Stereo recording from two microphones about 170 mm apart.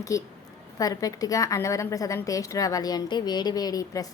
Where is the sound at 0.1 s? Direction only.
20° left (ahead or behind).